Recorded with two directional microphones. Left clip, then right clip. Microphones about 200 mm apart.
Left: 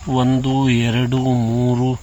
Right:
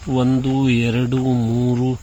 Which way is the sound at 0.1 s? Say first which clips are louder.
Left 1 dB; 10° left (ahead or behind).